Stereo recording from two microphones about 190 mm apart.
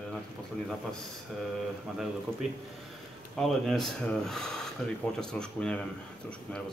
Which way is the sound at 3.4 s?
Centre (ahead or behind).